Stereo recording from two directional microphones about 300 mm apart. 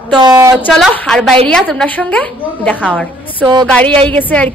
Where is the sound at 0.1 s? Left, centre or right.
Centre.